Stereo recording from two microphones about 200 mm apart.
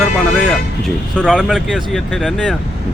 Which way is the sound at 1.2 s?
Centre (ahead or behind).